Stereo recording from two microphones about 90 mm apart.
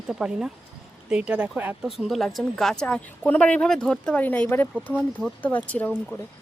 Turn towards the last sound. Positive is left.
turn(degrees=20)  # may be behind; listen again after turning